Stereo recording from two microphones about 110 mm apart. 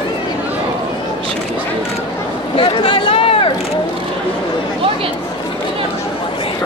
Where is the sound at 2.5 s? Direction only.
50° left (ahead or behind).